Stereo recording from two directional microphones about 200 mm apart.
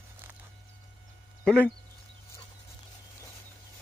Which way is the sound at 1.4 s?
5° left (ahead or behind).